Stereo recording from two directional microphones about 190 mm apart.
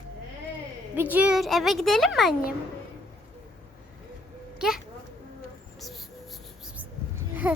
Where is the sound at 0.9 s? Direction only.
10° right (ahead or behind).